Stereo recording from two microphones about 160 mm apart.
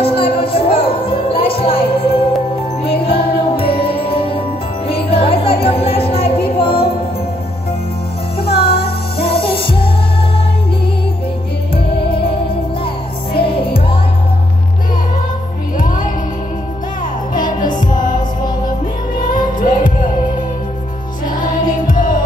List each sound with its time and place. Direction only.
0.0 s music: 35° left (ahead or behind)
8.6 s music: 35° left (ahead or behind)
11.7 s music: 35° left (ahead or behind)
13.4 s music: 35° left (ahead or behind)
15.8 s music: 55° left (ahead or behind)
17.3 s music: 55° left (ahead or behind)
19.2 s heart sounds: 55° left (ahead or behind)
21.6 s music: 55° left (ahead or behind)